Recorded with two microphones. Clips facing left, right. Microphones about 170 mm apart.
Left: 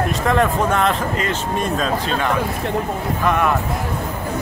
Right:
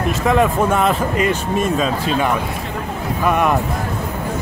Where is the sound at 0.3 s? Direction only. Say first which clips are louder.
Right 3 dB; 5° right (ahead or behind).